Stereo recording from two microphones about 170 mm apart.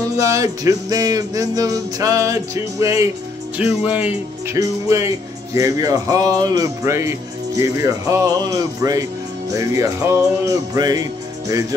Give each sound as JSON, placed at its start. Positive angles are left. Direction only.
{"t": 0.2, "sound": "music", "side_deg": -20}
{"t": 3.5, "sound": "speech", "side_deg": -10}
{"t": 5.5, "sound": "music", "side_deg": -20}